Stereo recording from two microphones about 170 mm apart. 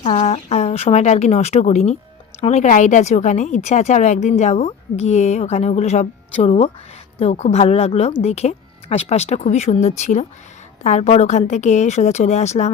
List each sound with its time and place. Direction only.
0.0 s a woman's voice: 35° left (ahead or behind)